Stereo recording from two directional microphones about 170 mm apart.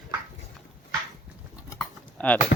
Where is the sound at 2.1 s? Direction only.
10° left (ahead or behind).